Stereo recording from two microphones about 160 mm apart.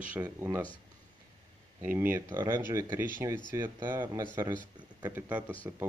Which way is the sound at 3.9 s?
15° right (ahead or behind).